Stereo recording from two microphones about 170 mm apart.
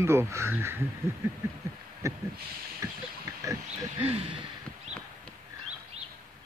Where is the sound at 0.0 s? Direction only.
15° right (ahead or behind).